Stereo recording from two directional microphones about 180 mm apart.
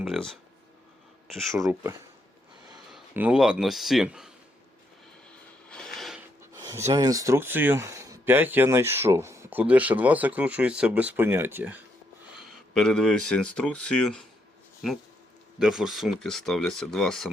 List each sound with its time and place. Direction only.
0.0 s speech: centre (ahead or behind)
1.6 s speech: 15° right (ahead or behind)
2.9 s speech: 5° right (ahead or behind)
5.6 s a sound: 5° left (ahead or behind)
6.5 s speech: 20° right (ahead or behind)
12.4 s speech: 5° left (ahead or behind)
15.5 s speech: 5° right (ahead or behind)